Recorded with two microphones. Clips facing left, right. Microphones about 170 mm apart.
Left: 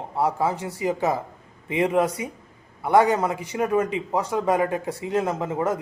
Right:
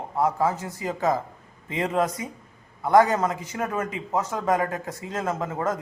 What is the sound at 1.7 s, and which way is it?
Speech, 20° left (ahead or behind).